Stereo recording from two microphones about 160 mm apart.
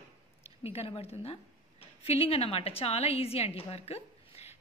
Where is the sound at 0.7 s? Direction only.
35° left (ahead or behind).